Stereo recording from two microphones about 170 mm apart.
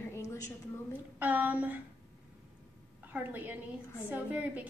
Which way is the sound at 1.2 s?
10° right (ahead or behind).